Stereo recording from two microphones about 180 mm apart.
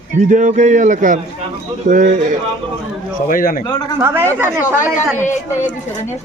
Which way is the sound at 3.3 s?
50° left (ahead or behind).